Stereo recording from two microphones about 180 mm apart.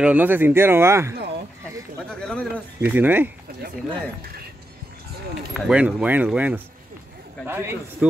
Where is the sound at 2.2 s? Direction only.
5° left (ahead or behind).